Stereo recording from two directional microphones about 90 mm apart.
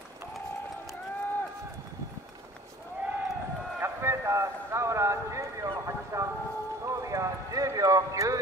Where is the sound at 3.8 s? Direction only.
30° right (ahead or behind).